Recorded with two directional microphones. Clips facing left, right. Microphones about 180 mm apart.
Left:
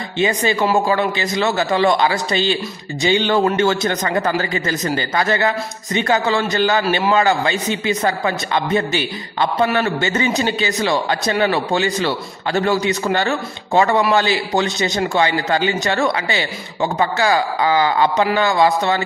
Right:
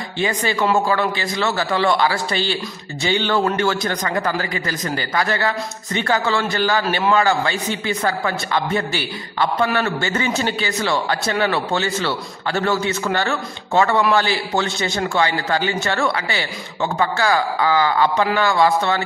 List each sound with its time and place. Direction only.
0.2 s a man's voice: 20° left (ahead or behind)